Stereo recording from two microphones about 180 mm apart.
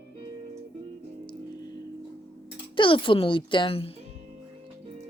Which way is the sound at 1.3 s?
20° left (ahead or behind).